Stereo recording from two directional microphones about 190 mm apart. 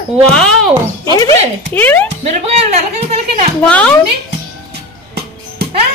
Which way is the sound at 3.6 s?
5° left (ahead or behind).